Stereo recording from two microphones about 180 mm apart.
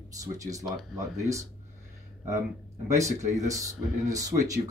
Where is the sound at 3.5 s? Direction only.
20° right (ahead or behind).